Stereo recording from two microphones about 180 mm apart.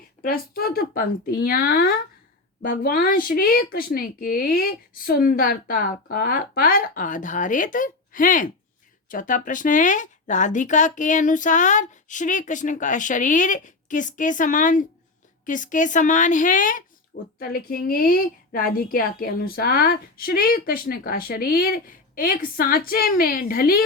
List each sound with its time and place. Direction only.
0.2 s speech: 55° left (ahead or behind)